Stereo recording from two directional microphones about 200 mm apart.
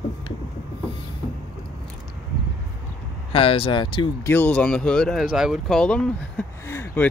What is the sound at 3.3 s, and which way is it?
Speech, 25° left (ahead or behind).